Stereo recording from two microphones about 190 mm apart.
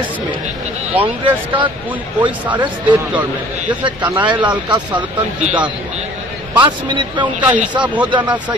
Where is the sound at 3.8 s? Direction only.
25° right (ahead or behind).